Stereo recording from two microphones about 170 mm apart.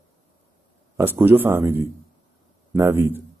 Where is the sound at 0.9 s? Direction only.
10° right (ahead or behind).